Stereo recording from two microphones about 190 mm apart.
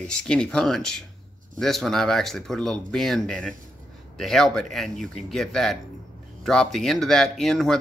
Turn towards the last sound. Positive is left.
turn(degrees=0)  # may be behind; listen again after turning